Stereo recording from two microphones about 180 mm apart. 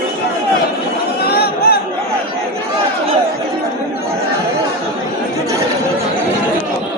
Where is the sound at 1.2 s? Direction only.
60° left (ahead or behind).